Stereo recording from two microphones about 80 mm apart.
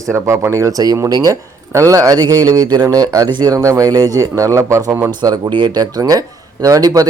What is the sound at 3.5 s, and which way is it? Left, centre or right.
A man's voice, right.